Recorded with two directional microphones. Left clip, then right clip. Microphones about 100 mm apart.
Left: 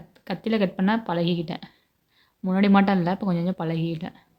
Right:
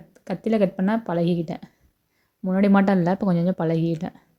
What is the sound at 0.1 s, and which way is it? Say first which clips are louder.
A woman's voice: right 2 dB; 35° right (ahead or behind).